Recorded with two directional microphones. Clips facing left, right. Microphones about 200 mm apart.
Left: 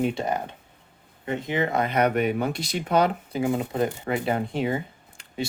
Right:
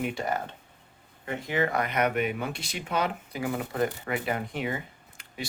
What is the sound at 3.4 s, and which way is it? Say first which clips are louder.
Speech: left 4 dB; 25° left (ahead or behind).